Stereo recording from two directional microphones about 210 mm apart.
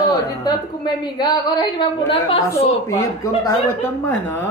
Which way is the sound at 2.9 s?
15° left (ahead or behind).